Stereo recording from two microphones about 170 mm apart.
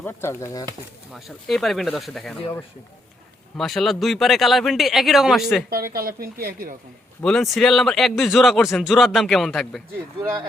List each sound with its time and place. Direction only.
0.0 s speech: 15° left (ahead or behind)
1.1 s a man's voice: centre (ahead or behind)
3.6 s a man's voice: centre (ahead or behind)
5.7 s speech: 60° right (ahead or behind)
7.2 s a man's voice: 5° left (ahead or behind)